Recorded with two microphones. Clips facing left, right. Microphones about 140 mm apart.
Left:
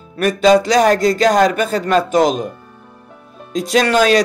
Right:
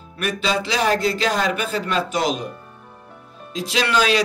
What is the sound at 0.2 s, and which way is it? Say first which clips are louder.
Speech: left 11 dB; 45° left (ahead or behind).